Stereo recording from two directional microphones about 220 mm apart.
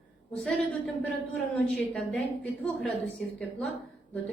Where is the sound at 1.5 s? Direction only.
5° left (ahead or behind).